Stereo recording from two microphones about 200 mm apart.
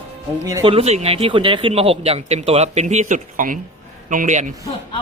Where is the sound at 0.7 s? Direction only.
30° right (ahead or behind).